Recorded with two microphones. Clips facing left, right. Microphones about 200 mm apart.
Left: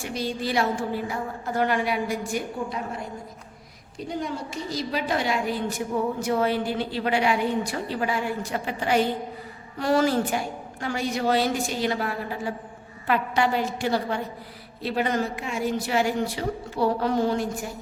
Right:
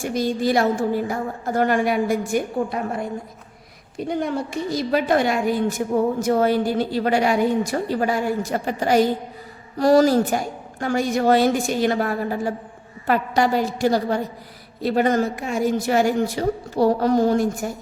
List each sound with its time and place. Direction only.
0.0 s a woman's voice: 45° right (ahead or behind)